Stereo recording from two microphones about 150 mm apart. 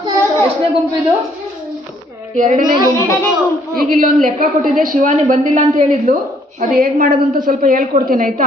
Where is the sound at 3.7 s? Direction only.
70° right (ahead or behind).